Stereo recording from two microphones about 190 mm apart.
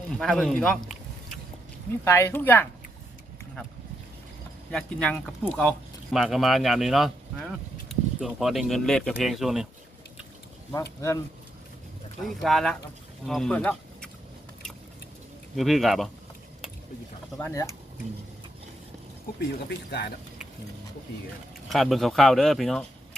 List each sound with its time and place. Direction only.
0.1 s speech: 5° left (ahead or behind)
2.0 s speech: 15° left (ahead or behind)
4.7 s speech: 5° left (ahead or behind)
12.2 s speech: centre (ahead or behind)
15.5 s speech: centre (ahead or behind)
17.3 s speech: 15° left (ahead or behind)
19.4 s speech: 60° left (ahead or behind)
21.7 s speech: centre (ahead or behind)